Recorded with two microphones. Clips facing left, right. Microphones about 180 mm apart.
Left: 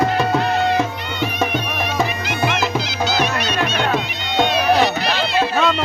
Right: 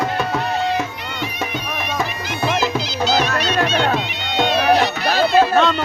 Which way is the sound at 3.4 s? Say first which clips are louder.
Right 2 dB; 50° left (ahead or behind).